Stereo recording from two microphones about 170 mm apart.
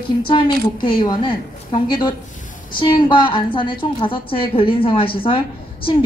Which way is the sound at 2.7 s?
30° left (ahead or behind).